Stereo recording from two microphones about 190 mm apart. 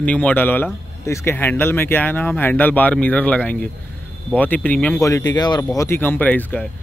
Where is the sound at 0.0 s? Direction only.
5° left (ahead or behind).